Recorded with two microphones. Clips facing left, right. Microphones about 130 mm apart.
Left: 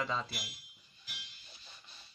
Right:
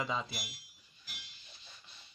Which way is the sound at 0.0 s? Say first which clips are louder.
Even; 10° right (ahead or behind).